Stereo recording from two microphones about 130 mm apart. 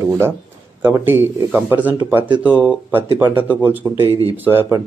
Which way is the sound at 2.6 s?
10° right (ahead or behind).